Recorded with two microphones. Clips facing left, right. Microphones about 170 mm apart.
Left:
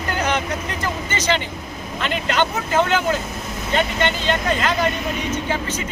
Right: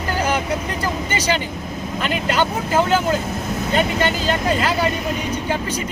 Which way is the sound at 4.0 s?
5° right (ahead or behind).